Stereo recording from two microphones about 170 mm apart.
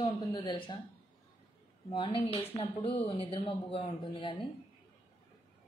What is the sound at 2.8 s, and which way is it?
A woman's voice, 35° left (ahead or behind).